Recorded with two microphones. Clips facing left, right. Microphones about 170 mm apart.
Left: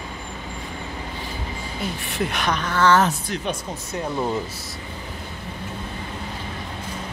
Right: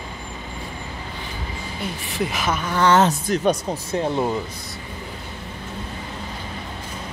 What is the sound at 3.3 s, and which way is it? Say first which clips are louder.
Speech: right 7 dB; 35° right (ahead or behind).